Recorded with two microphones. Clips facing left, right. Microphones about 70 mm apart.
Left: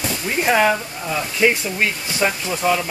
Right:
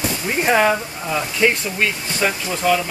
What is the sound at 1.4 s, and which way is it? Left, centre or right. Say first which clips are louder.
Speech: left 1 dB; centre.